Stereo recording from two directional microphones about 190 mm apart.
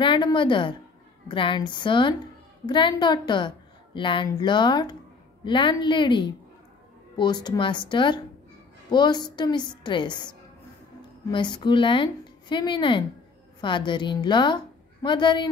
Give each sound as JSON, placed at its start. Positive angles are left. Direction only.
{"t": 0.0, "sound": "a woman's voice", "side_deg": 25}